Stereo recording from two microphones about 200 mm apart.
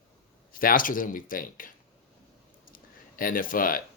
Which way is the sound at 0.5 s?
45° left (ahead or behind).